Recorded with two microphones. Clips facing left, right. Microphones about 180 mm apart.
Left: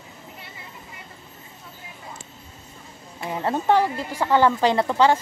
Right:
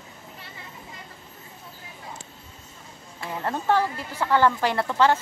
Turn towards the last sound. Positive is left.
turn(degrees=15)  # may be behind; listen again after turning